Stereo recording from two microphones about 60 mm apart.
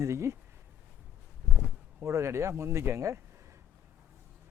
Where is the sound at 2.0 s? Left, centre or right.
Right.